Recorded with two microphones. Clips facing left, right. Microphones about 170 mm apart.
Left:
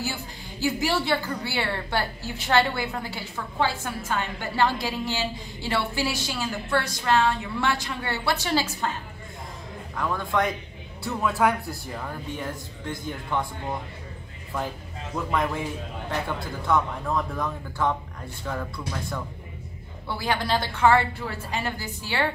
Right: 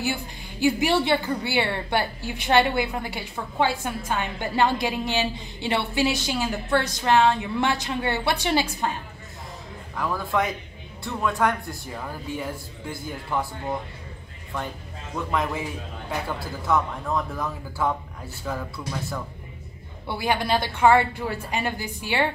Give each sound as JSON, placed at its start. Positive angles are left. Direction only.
{"t": 0.6, "sound": "a woman's voice", "side_deg": -20}
{"t": 9.9, "sound": "a man's voice", "side_deg": -5}
{"t": 15.1, "sound": "a man's voice", "side_deg": 0}